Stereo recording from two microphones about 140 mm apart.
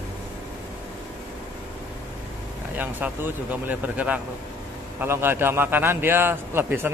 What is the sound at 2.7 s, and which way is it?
A man's voice, 15° right (ahead or behind).